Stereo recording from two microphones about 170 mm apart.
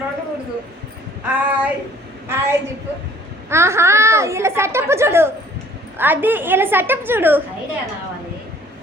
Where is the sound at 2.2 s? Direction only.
15° right (ahead or behind).